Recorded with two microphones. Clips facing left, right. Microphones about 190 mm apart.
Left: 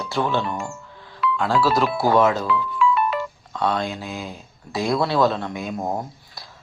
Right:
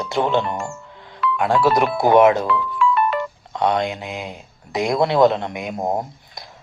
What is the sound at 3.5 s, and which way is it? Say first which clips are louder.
Speech: right 4 dB; 20° right (ahead or behind).